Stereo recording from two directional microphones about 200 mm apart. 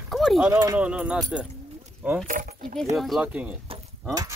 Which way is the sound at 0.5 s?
15° right (ahead or behind).